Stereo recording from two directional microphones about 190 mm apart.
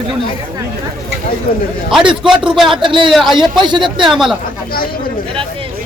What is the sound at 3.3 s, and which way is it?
Speech, 25° right (ahead or behind).